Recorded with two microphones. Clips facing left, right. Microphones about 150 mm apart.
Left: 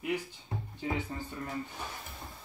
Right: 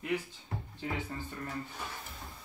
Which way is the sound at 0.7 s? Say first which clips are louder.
Left 3 dB; 15° left (ahead or behind).